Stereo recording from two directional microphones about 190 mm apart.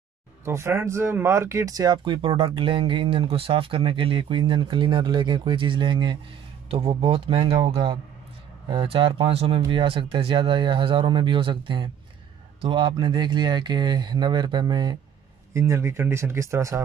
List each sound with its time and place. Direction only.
0.5 s speech: 15° right (ahead or behind)